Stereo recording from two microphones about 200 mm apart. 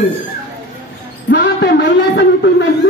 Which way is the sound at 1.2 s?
55° left (ahead or behind).